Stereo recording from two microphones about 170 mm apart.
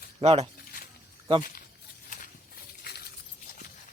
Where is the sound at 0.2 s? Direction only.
35° right (ahead or behind).